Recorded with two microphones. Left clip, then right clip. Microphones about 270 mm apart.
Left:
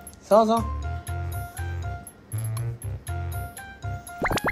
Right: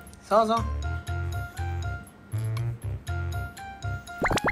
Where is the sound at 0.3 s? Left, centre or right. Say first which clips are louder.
Left 3 dB; centre.